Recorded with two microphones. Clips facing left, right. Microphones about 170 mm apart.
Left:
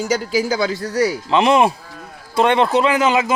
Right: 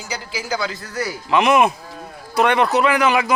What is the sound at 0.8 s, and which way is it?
Speech, 30° left (ahead or behind).